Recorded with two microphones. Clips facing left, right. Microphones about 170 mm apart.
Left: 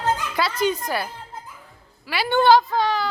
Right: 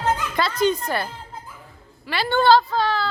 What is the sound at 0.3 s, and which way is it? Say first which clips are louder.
A woman's voice: right 2 dB; 10° left (ahead or behind).